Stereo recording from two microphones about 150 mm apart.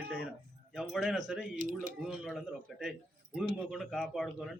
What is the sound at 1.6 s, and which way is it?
Speech, 60° right (ahead or behind).